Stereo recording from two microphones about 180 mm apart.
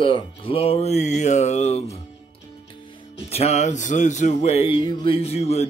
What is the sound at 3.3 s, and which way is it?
Speech, 35° left (ahead or behind).